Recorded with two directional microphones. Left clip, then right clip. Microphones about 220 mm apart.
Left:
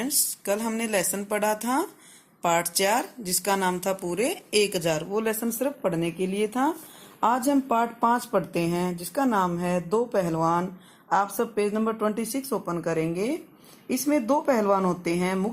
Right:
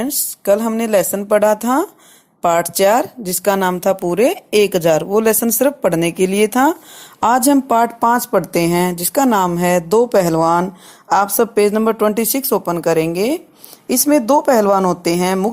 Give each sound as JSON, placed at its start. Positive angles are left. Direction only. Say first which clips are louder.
{"t": 0.0, "sound": "speech", "louder": "right 9 dB", "side_deg": -40}